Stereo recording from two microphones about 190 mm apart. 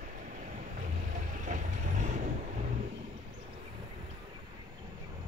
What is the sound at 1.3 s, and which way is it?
Vehicle, 40° right (ahead or behind).